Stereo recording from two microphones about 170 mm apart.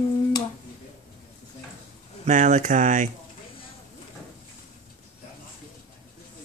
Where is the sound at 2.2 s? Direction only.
45° right (ahead or behind).